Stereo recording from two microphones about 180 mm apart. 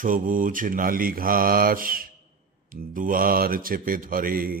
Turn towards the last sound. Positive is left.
turn(degrees=-55)  # may be behind; listen again after turning